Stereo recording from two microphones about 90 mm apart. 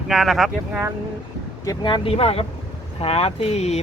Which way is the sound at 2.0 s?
90° left.